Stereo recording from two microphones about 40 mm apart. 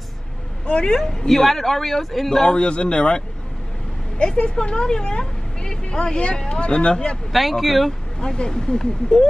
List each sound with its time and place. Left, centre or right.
0.7 s a woman's voice: left
0.9 s speech: centre
2.5 s a woman's voice: left
4.4 s a woman's voice: left
7.3 s speech: centre
8.2 s a woman's voice: left